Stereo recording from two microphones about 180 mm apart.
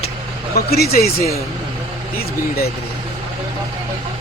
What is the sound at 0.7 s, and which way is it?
Speech, 60° left (ahead or behind).